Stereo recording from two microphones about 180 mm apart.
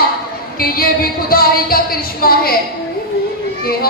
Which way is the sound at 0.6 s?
55° left (ahead or behind).